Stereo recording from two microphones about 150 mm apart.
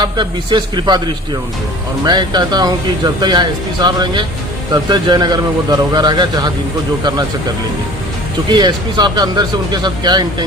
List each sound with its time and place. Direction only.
0.0 s speech: 30° right (ahead or behind)
8.4 s speech: 30° right (ahead or behind)